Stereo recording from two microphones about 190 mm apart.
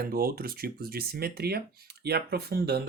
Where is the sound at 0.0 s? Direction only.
50° right (ahead or behind).